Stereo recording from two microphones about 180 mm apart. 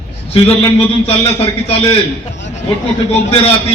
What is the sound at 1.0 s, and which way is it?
Speech, 30° left (ahead or behind).